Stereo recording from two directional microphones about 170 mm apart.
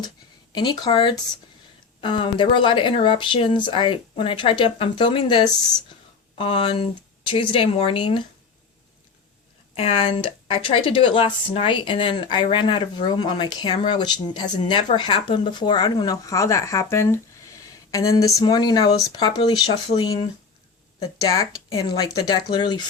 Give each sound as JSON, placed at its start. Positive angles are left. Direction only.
{"t": 0.5, "sound": "speech", "side_deg": 25}
{"t": 9.7, "sound": "speech", "side_deg": 35}